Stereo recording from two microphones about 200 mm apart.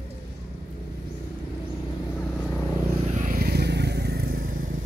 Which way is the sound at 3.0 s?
40° right (ahead or behind).